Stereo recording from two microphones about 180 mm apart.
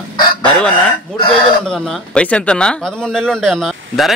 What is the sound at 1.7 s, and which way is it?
Speech, 5° left (ahead or behind).